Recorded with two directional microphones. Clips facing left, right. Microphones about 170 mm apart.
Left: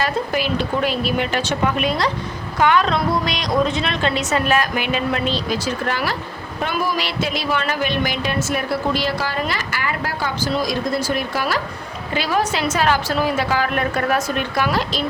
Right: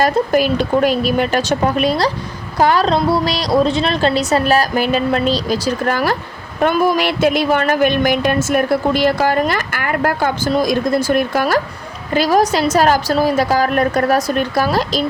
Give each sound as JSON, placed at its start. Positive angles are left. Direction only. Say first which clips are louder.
{"t": 0.0, "sound": "a woman's voice", "louder": "right 7 dB", "side_deg": -45}